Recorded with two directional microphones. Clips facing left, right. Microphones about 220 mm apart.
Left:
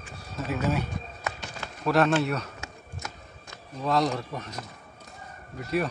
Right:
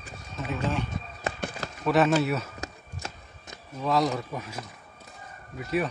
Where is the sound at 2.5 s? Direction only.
35° right (ahead or behind).